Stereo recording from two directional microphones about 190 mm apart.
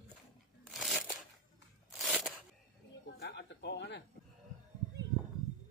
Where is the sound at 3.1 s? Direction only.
60° left (ahead or behind).